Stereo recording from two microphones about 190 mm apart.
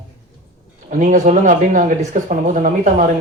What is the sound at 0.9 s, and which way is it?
A man's voice, 40° right (ahead or behind).